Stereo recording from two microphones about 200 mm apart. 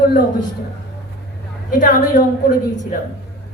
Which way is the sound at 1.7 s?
40° left (ahead or behind).